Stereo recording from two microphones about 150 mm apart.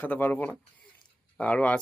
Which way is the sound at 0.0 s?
15° left (ahead or behind).